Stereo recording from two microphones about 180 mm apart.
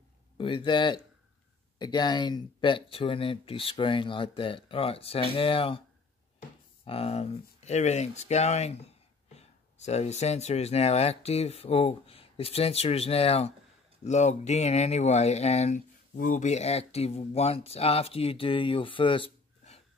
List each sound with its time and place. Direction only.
0.4 s speech: 30° left (ahead or behind)
6.8 s speech: 35° left (ahead or behind)